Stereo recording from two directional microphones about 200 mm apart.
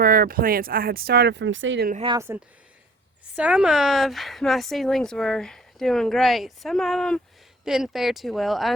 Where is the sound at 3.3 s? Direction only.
5° right (ahead or behind).